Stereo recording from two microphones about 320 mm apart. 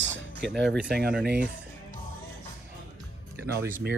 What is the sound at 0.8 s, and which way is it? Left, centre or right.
Speech, right.